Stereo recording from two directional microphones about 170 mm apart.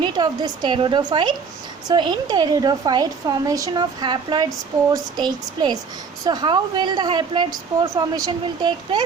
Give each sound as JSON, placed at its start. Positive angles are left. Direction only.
{"t": 0.0, "sound": "a woman's voice", "side_deg": -25}